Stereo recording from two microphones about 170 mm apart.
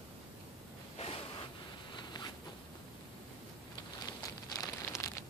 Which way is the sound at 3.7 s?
20° left (ahead or behind).